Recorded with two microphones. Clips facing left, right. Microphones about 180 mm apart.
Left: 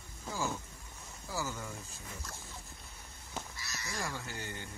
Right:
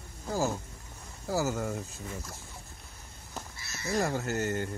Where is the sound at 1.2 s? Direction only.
40° right (ahead or behind).